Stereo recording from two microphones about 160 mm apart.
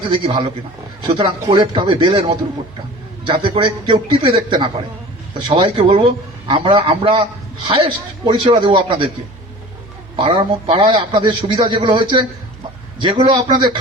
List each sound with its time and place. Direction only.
0.1 s a man's voice: 30° right (ahead or behind)
3.2 s a man's voice: 30° right (ahead or behind)
10.2 s a man's voice: 30° right (ahead or behind)